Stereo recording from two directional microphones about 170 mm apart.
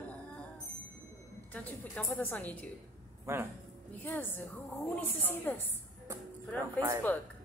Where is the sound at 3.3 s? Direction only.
15° right (ahead or behind).